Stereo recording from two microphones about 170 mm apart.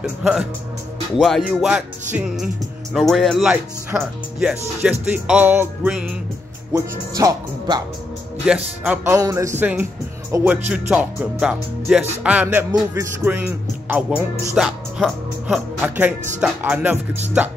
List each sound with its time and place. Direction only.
0.0 s speech: centre (ahead or behind)
6.7 s speech: 20° right (ahead or behind)
8.5 s speech: 10° right (ahead or behind)
14.5 s speech: centre (ahead or behind)